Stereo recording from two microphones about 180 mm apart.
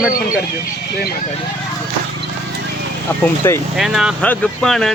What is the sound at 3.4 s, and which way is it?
Speech, 15° left (ahead or behind).